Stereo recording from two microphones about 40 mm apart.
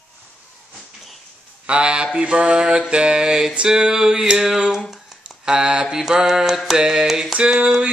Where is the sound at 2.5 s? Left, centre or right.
Centre.